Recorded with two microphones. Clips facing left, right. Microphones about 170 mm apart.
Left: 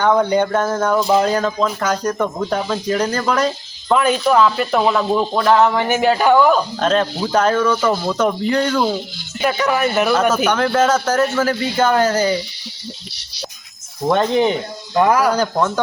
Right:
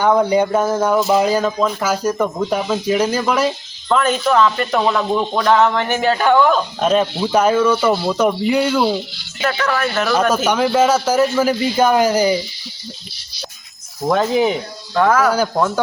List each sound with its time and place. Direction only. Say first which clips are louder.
0.0 s speech: right 1 dB; 10° right (ahead or behind)
3.8 s speech: left 1 dB; 10° left (ahead or behind)
6.7 s speech: right 1 dB; 10° right (ahead or behind)
9.4 s speech: left 2 dB; 15° left (ahead or behind)
10.3 s speech: right 1 dB; 10° right (ahead or behind)
14.0 s speech: even; centre (ahead or behind)
14.9 s speech: even; 10° left (ahead or behind)
15.3 s speech: even; 5° right (ahead or behind)